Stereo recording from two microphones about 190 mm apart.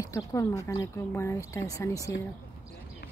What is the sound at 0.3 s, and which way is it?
Speech, 15° left (ahead or behind).